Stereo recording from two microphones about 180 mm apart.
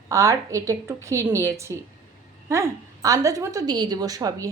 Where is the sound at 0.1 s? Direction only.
15° right (ahead or behind).